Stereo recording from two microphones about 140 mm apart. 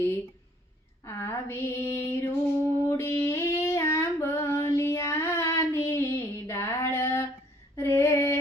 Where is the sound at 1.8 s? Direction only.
20° left (ahead or behind).